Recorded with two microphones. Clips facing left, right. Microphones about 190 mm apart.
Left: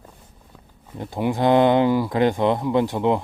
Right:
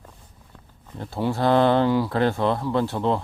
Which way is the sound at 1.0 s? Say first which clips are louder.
Left 2 dB; 15° left (ahead or behind).